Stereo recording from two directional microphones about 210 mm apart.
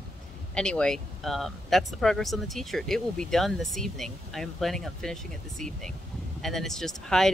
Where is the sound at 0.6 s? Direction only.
5° left (ahead or behind).